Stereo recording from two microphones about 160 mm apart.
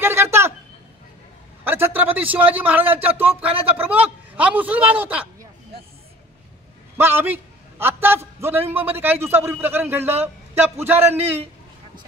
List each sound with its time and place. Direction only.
0.0 s a sound: 15° right (ahead or behind)
1.6 s a man's voice: 15° right (ahead or behind)
7.0 s a man's voice: 15° right (ahead or behind)